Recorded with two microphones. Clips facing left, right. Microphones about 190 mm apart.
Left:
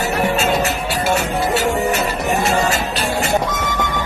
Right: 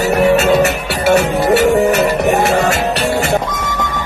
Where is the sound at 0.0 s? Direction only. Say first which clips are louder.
Right 7 dB; 70° right (ahead or behind).